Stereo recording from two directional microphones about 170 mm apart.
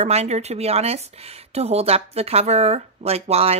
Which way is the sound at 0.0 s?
40° right (ahead or behind).